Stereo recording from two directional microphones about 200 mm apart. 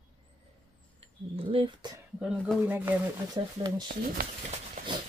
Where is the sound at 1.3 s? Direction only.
25° right (ahead or behind).